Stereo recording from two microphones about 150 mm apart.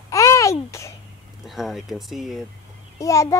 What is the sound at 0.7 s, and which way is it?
Speech, 20° left (ahead or behind).